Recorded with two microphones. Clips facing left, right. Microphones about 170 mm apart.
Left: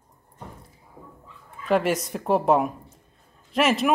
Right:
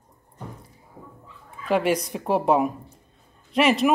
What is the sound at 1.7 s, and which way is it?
Speech, centre (ahead or behind).